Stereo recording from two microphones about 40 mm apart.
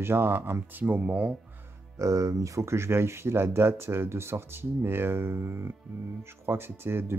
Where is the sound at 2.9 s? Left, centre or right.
Right.